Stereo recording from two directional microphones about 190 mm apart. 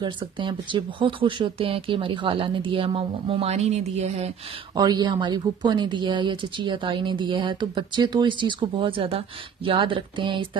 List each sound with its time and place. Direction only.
0.0 s a woman's voice: 25° right (ahead or behind)
4.7 s a woman's voice: 20° right (ahead or behind)